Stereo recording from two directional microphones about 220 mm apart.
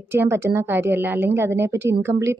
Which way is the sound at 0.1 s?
10° right (ahead or behind).